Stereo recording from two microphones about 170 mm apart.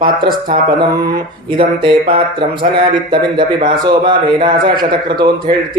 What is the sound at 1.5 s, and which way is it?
Speech, 30° right (ahead or behind).